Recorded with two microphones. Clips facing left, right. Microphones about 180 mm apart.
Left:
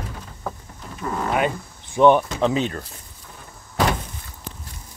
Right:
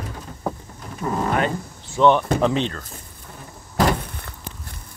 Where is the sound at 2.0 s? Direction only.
10° left (ahead or behind).